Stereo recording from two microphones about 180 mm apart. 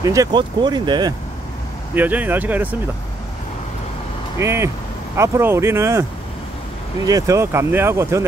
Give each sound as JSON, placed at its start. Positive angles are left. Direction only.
{"t": 0.0, "sound": "speech", "side_deg": -20}
{"t": 2.0, "sound": "speech", "side_deg": -10}
{"t": 4.4, "sound": "speech", "side_deg": -15}
{"t": 7.1, "sound": "speech", "side_deg": -20}